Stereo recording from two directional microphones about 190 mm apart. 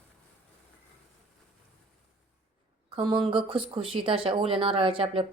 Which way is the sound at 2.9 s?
25° right (ahead or behind).